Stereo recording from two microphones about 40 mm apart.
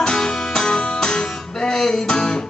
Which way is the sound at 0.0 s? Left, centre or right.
Centre.